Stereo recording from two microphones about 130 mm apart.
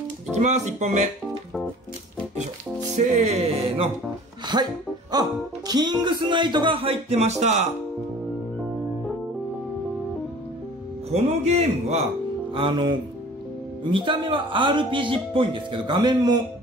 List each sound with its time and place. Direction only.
0.3 s music: 60° right (ahead or behind)
3.0 s music: 65° right (ahead or behind)
4.5 s speech: 35° right (ahead or behind); by 7.6 s 60° right (ahead or behind)
11.1 s music: 55° right (ahead or behind)
12.5 s speech: 40° right (ahead or behind)